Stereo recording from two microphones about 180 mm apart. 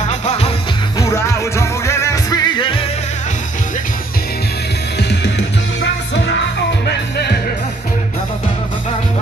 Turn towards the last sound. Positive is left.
turn(degrees=65)  # may be behind; listen again after turning